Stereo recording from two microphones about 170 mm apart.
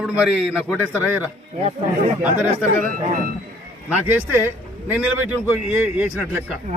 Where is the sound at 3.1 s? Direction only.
55° right (ahead or behind).